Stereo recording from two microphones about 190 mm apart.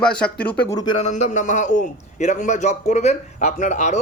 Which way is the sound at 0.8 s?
25° left (ahead or behind).